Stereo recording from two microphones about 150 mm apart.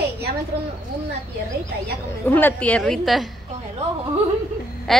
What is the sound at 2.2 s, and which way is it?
A woman's voice, 10° left (ahead or behind).